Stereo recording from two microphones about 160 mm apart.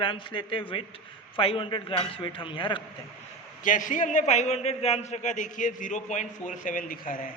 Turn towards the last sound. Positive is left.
turn(degrees=60)  # may be behind; listen again after turning